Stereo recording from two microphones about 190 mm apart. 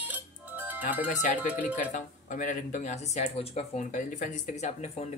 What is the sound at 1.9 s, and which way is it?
Speech, 40° left (ahead or behind).